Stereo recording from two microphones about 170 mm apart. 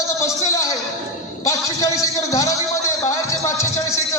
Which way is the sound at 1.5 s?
20° left (ahead or behind).